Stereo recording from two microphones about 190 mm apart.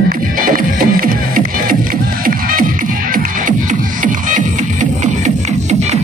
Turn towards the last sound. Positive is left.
turn(degrees=-35)  # may be behind; listen again after turning